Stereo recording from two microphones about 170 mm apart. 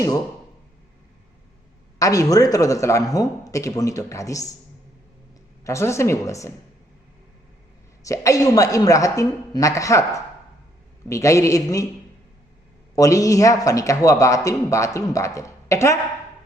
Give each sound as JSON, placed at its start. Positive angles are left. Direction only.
{"t": 2.0, "sound": "speech", "side_deg": 20}
{"t": 5.6, "sound": "speech", "side_deg": 15}
{"t": 8.0, "sound": "speech", "side_deg": 20}
{"t": 13.0, "sound": "speech", "side_deg": 20}